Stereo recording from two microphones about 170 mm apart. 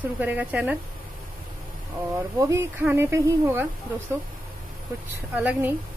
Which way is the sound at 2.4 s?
15° right (ahead or behind).